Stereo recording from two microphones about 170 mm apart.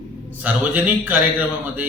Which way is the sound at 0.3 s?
10° right (ahead or behind).